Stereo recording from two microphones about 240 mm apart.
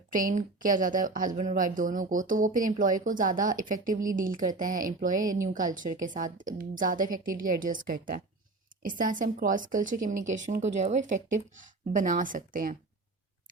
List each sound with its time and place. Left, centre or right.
0.1 s speech: right